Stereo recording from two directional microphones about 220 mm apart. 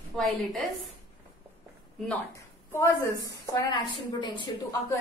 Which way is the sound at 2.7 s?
10° left (ahead or behind).